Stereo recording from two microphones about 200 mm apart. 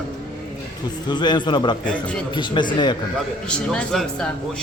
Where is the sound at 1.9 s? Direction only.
5° left (ahead or behind).